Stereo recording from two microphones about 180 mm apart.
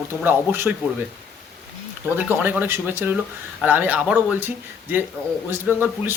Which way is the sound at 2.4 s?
10° right (ahead or behind).